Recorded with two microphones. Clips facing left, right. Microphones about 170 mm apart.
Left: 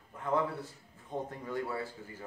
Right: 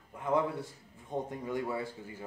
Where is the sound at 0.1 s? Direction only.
15° right (ahead or behind).